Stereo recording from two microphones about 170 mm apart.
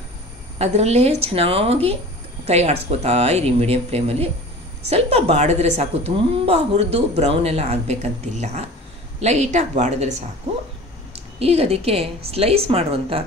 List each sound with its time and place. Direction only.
0.6 s speech: 40° right (ahead or behind)
11.1 s speech: 35° right (ahead or behind)